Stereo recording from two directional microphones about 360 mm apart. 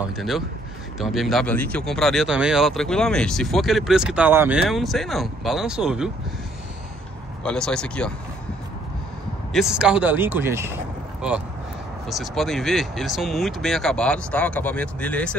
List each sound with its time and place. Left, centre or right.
0.1 s speech: centre
7.4 s speech: centre
9.5 s speech: centre